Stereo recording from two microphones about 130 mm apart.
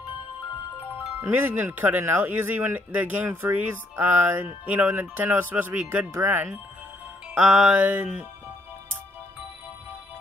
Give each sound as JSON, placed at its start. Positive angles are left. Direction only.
{"t": 1.3, "sound": "speech", "side_deg": -15}